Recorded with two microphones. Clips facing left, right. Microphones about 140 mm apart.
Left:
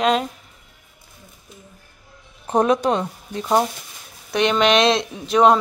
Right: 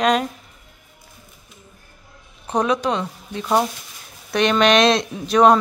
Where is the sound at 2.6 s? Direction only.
45° left (ahead or behind).